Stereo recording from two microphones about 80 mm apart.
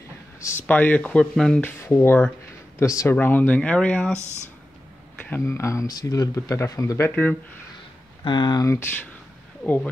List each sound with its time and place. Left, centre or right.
0.7 s speech: left
1.3 s speech: centre
1.6 s speech: left
2.8 s speech: left
3.2 s speech: left
5.2 s speech: left
5.5 s speech: left
5.9 s speech: left
7.1 s speech: centre
8.2 s speech: left
8.6 s speech: left
9.6 s speech: centre